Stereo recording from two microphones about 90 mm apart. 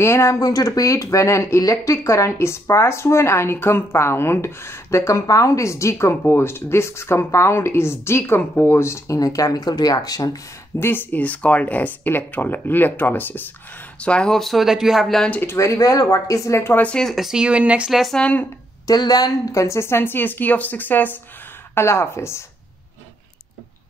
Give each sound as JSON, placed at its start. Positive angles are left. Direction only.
{"t": 0.0, "sound": "speech", "side_deg": 30}
{"t": 10.8, "sound": "speech", "side_deg": 25}
{"t": 14.0, "sound": "speech", "side_deg": 10}
{"t": 15.5, "sound": "speech", "side_deg": 35}
{"t": 16.8, "sound": "speech", "side_deg": 10}
{"t": 17.1, "sound": "speech", "side_deg": -5}
{"t": 18.1, "sound": "speech", "side_deg": 15}
{"t": 18.9, "sound": "speech", "side_deg": 45}